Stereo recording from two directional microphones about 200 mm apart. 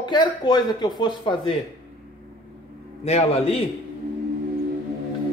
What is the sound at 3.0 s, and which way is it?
Speech, 30° left (ahead or behind).